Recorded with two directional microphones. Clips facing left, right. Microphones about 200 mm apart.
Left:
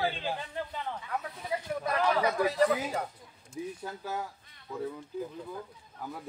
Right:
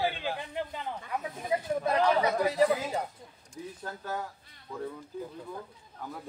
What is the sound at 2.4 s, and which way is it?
Speech, 15° right (ahead or behind).